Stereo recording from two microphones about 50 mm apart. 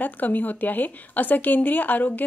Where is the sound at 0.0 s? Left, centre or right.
Left.